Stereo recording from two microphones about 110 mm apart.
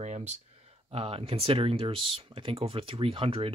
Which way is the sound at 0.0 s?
90° right.